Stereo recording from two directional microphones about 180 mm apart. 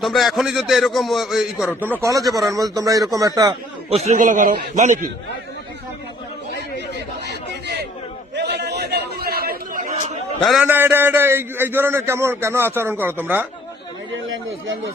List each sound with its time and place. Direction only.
0.0 s a man's voice: centre (ahead or behind)
2.0 s speech: 20° right (ahead or behind)
3.8 s a man's voice: 35° right (ahead or behind)
8.4 s chatter: 65° right (ahead or behind)
10.4 s a man's voice: centre (ahead or behind)
10.7 s a man's voice: 10° right (ahead or behind)